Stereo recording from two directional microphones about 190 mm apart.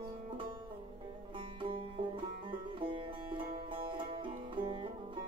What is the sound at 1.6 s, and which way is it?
Music, 30° right (ahead or behind).